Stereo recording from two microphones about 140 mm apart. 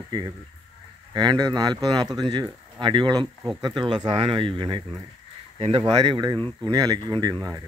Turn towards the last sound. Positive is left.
turn(degrees=-25)  # may be behind; listen again after turning